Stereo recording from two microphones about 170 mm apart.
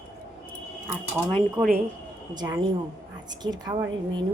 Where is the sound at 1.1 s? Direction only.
10° left (ahead or behind).